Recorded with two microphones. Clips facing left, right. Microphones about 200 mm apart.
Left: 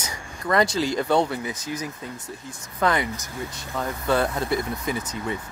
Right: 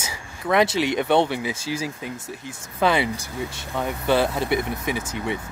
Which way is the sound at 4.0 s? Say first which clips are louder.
Right 2 dB; 25° right (ahead or behind).